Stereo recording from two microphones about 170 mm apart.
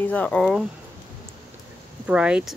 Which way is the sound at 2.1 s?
5° right (ahead or behind).